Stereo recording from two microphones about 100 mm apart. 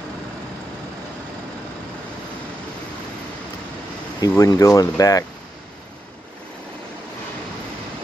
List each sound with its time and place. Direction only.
4.4 s speech: 35° left (ahead or behind)